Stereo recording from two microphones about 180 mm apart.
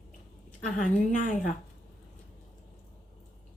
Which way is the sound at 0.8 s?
45° left (ahead or behind).